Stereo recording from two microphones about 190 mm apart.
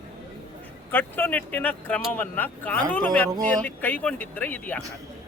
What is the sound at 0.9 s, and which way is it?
Speech, 10° left (ahead or behind).